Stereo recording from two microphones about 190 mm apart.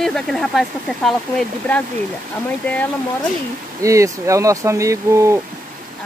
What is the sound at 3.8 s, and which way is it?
Speech, 15° right (ahead or behind).